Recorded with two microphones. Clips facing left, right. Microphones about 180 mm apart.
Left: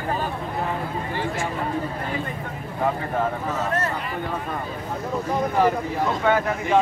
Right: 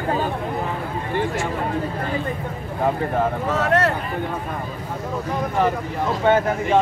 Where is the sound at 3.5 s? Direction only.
75° right (ahead or behind).